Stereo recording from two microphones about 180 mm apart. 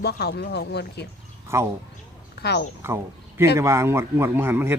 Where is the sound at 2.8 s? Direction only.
15° right (ahead or behind).